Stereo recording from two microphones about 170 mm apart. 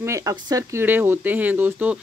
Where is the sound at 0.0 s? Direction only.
20° right (ahead or behind).